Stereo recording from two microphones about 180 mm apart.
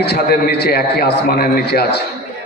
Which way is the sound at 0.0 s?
60° left (ahead or behind).